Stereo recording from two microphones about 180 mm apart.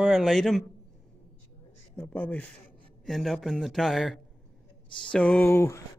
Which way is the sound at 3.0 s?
Centre (ahead or behind).